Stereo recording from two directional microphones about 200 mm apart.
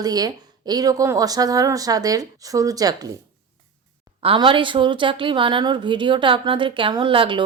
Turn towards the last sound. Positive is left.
turn(degrees=-25)  # may be behind; listen again after turning